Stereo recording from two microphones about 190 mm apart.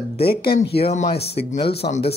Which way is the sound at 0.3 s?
55° left (ahead or behind).